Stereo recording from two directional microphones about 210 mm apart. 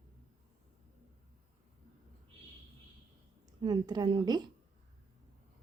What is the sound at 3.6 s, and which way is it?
Speech, 20° right (ahead or behind).